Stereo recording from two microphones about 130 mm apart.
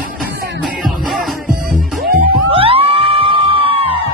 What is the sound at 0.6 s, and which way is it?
Music, centre (ahead or behind).